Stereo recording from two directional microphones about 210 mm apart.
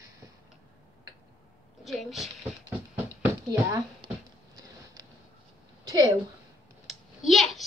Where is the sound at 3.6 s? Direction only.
20° right (ahead or behind).